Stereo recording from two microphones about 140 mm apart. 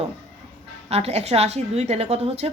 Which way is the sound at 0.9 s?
45° right (ahead or behind).